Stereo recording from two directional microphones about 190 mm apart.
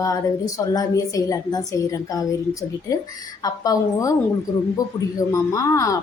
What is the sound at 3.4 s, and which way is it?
Speech, 20° left (ahead or behind).